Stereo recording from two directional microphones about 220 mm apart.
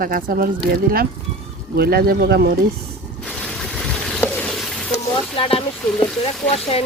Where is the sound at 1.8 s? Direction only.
45° right (ahead or behind).